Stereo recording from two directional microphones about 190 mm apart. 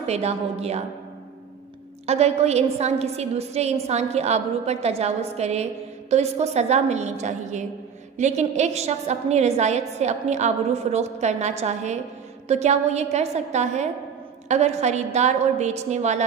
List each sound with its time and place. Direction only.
0.0 s a woman's voice: 35° right (ahead or behind)
2.0 s a woman's voice: 35° right (ahead or behind)